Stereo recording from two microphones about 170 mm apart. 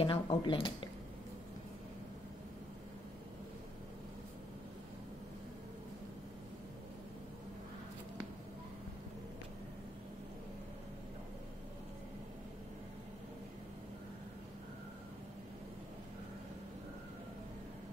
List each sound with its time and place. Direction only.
0.0 s speech: 30° left (ahead or behind)